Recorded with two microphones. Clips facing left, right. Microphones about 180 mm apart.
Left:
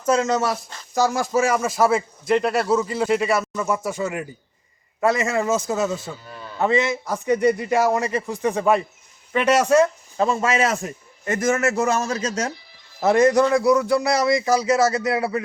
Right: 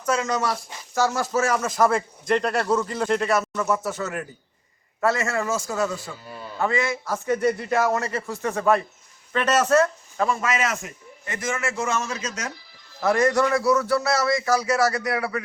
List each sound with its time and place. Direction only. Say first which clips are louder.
0.0 s a man's voice: left 4 dB; 25° left (ahead or behind)
0.9 s a man's voice: left 3 dB; 15° left (ahead or behind)
10.2 s a man's voice: left 4 dB; 25° left (ahead or behind)
13.0 s a man's voice: left 4 dB; 20° left (ahead or behind)